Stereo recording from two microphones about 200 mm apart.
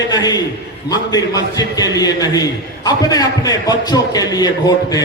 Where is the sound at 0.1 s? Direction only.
20° left (ahead or behind).